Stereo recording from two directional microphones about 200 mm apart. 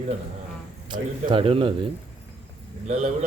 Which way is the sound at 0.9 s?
25° right (ahead or behind).